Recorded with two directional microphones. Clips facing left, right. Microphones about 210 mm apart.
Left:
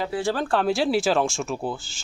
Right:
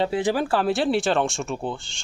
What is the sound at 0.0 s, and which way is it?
Speech, 20° right (ahead or behind).